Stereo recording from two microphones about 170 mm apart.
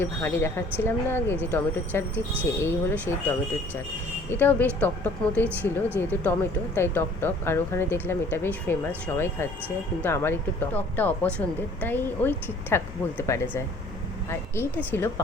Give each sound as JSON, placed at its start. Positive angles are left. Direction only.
{"t": 0.0, "sound": "speech", "side_deg": 15}